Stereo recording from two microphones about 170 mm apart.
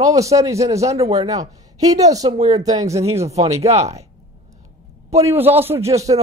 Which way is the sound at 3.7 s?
40° right (ahead or behind).